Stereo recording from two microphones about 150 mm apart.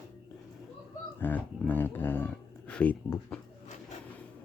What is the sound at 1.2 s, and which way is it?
Speech, 10° left (ahead or behind).